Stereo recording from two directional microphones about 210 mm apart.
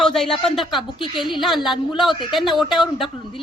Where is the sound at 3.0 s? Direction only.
25° left (ahead or behind).